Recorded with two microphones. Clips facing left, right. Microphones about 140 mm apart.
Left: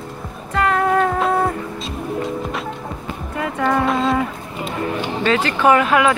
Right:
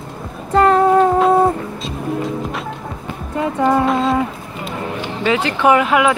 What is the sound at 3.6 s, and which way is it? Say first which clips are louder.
Humming: right 2 dB; 5° right (ahead or behind).